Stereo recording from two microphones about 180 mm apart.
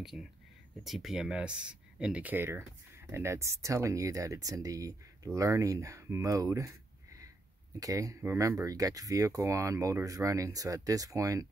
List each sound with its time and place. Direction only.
0.8 s speech: centre (ahead or behind); by 11.4 s 20° right (ahead or behind)